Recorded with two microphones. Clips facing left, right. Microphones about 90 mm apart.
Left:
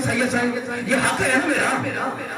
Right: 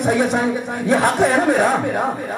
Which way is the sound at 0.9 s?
20° right (ahead or behind).